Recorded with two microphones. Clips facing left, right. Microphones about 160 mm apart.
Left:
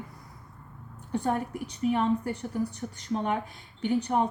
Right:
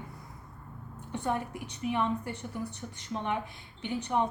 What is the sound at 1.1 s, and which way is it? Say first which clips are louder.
A woman's voice: left 4 dB; 40° left (ahead or behind).